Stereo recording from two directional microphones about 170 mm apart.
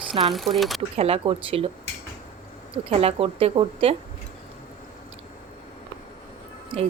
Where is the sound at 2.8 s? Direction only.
35° right (ahead or behind).